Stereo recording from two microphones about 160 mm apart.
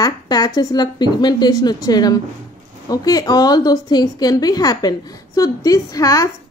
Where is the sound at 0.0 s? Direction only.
25° left (ahead or behind).